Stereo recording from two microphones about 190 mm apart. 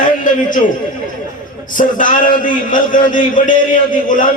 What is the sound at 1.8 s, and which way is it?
A man's voice, 45° left (ahead or behind).